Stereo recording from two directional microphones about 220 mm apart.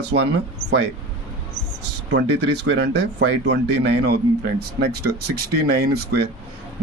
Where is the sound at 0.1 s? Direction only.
65° right (ahead or behind).